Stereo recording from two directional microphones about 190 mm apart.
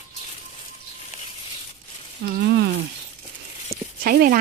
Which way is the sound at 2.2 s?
60° right (ahead or behind).